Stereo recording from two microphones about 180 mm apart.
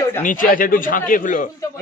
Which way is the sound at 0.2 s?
50° left (ahead or behind).